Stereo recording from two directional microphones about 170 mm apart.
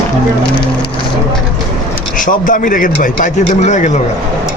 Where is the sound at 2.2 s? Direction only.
50° left (ahead or behind).